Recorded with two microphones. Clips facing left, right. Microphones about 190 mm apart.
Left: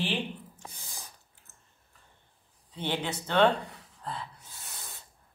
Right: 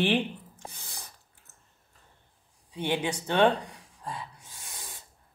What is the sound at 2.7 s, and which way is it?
Speech, 15° right (ahead or behind).